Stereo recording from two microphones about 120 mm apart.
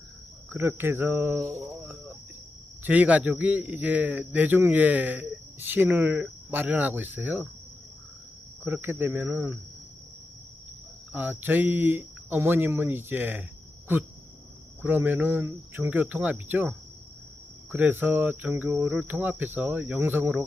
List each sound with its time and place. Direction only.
0.5 s speech: 20° right (ahead or behind)
1.7 s cricket: 15° right (ahead or behind)
2.8 s a man's voice: 10° right (ahead or behind)
8.6 s a man's voice: 15° right (ahead or behind)
11.1 s a man's voice: 15° right (ahead or behind)